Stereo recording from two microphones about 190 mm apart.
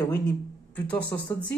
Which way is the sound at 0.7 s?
5° left (ahead or behind).